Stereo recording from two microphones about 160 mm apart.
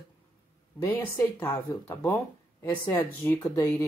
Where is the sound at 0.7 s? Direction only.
15° left (ahead or behind).